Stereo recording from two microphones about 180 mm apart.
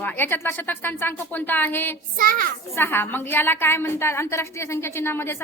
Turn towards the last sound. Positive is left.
turn(degrees=15)  # may be behind; listen again after turning